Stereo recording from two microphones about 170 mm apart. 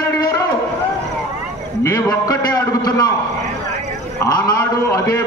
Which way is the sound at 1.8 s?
20° left (ahead or behind).